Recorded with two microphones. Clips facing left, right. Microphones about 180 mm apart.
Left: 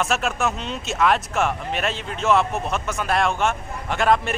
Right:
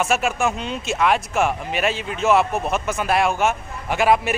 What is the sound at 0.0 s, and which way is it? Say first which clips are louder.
Speech: right 2 dB; centre (ahead or behind).